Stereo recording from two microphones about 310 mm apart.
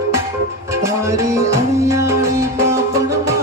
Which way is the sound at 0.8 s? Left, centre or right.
Centre.